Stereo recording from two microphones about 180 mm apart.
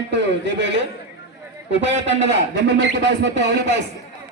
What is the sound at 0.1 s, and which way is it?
A man's voice, 85° right.